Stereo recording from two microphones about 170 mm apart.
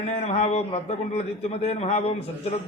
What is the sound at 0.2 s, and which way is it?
A man's voice, 40° left (ahead or behind).